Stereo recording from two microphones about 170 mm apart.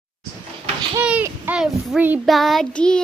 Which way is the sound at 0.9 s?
10° right (ahead or behind).